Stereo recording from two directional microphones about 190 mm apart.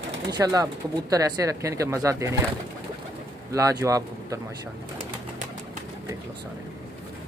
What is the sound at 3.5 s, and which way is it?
Speech, 15° right (ahead or behind).